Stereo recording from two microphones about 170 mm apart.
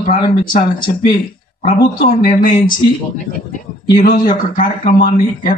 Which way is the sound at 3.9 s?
60° left (ahead or behind).